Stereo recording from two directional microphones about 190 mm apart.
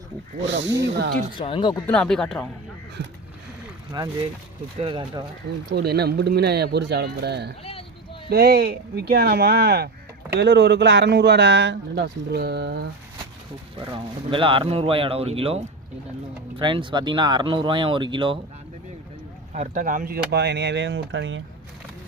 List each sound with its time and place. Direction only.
0.4 s speech: 70° right (ahead or behind)
1.4 s speech: 25° left (ahead or behind)
1.9 s speech: 5° left (ahead or behind)
4.0 s speech: 25° right (ahead or behind)
5.7 s speech: 55° right (ahead or behind)
7.6 s a sound: 30° left (ahead or behind)
8.3 s speech: 55° right (ahead or behind)
13.8 s speech: 25° right (ahead or behind)
19.5 s speech: 40° right (ahead or behind); by 21.4 s 80° right